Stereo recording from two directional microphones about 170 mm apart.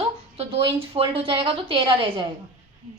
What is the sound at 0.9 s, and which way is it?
A woman's voice, 30° right (ahead or behind).